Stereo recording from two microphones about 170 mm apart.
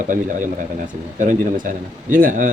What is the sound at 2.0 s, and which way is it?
Speech, 50° right (ahead or behind).